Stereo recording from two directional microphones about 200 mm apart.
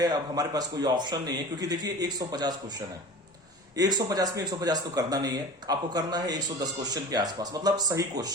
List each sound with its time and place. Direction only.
0.0 s speech: 20° right (ahead or behind)
3.8 s speech: 20° right (ahead or behind)